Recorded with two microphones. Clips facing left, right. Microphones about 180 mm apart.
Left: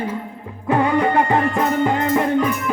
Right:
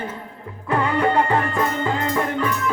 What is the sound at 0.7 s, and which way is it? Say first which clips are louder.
Music: left 3 dB; 20° left (ahead or behind).